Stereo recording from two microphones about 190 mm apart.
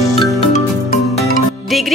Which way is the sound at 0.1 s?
30° left (ahead or behind).